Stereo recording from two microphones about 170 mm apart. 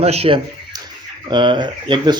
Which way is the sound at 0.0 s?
35° right (ahead or behind).